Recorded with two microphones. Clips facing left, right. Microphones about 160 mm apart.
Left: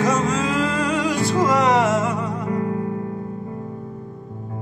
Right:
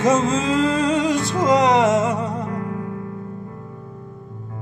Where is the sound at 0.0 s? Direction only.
25° right (ahead or behind).